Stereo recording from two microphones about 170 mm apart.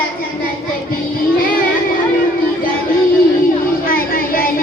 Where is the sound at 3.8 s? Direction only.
55° left (ahead or behind).